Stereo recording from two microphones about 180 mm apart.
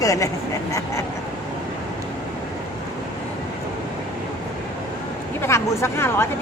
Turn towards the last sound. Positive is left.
turn(degrees=15)  # may be behind; listen again after turning